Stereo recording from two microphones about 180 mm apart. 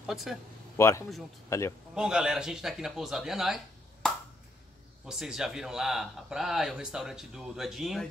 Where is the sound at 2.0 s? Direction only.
5° right (ahead or behind).